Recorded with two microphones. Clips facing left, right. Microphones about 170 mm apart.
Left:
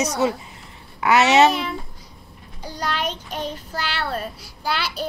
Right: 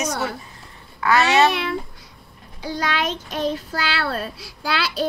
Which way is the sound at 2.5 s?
90° right.